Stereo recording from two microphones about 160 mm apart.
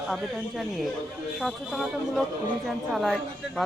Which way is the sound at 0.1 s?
Centre (ahead or behind).